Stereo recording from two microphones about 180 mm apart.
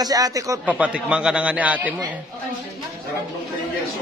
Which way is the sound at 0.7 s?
5° right (ahead or behind).